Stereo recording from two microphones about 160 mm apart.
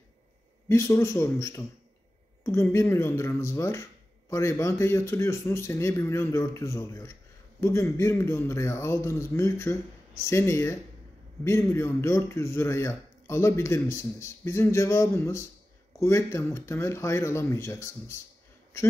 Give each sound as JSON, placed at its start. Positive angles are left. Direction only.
{"t": 0.7, "sound": "speech", "side_deg": 15}